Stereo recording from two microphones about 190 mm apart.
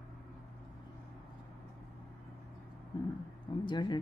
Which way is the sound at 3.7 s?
25° left (ahead or behind).